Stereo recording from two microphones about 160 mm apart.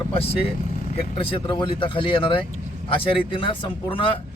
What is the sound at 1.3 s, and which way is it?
Speech, 30° left (ahead or behind).